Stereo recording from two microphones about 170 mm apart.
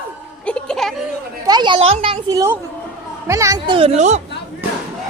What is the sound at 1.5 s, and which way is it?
Speech, 25° right (ahead or behind).